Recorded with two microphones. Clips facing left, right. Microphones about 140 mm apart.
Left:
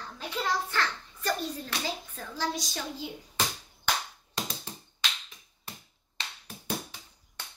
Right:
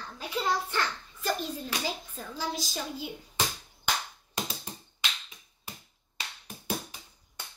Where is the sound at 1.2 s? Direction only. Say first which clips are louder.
Even; 10° right (ahead or behind).